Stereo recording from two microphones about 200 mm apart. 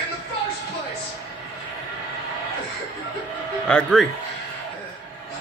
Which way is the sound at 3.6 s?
5° left (ahead or behind).